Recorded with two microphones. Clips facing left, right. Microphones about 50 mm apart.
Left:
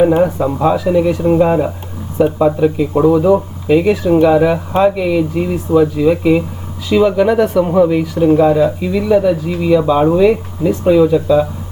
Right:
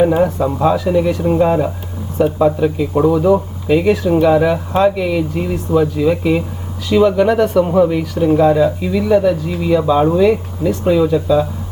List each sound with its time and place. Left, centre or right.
0.0 s speech: centre